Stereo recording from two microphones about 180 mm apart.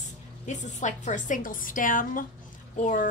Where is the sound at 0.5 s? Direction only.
40° left (ahead or behind).